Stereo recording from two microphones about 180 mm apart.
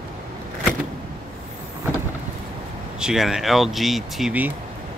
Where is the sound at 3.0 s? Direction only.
5° right (ahead or behind).